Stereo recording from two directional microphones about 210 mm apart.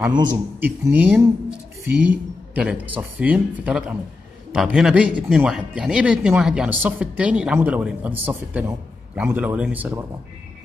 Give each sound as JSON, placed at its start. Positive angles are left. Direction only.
{"t": 0.2, "sound": "a man's voice", "side_deg": -20}
{"t": 0.7, "sound": "speech", "side_deg": -10}